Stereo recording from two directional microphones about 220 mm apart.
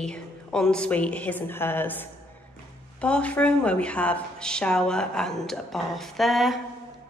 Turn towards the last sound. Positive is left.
turn(degrees=0)  # may be behind; listen again after turning